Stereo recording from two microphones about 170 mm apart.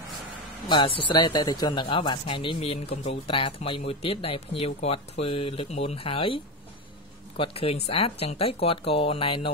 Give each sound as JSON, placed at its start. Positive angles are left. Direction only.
{"t": 0.7, "sound": "speech", "side_deg": 30}